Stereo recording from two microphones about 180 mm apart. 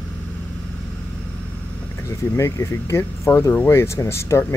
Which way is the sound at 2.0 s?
15° left (ahead or behind).